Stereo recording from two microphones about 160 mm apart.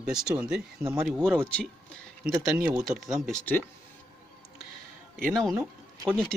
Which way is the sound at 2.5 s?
5° right (ahead or behind).